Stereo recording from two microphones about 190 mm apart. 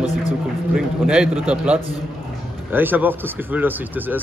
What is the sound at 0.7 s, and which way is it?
Speech, 5° right (ahead or behind).